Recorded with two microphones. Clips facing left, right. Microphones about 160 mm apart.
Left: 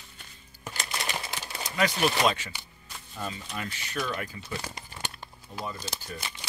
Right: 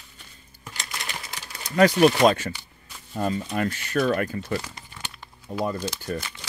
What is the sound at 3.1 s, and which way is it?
Speech, 45° right (ahead or behind).